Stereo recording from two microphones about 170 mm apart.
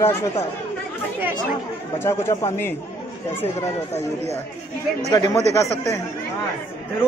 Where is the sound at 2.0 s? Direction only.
15° left (ahead or behind).